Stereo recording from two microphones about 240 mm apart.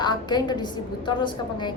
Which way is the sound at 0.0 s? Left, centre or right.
Centre.